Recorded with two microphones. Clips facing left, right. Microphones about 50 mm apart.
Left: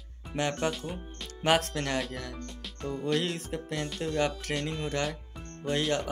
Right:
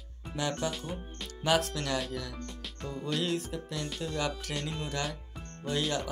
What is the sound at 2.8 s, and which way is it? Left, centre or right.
Music, left.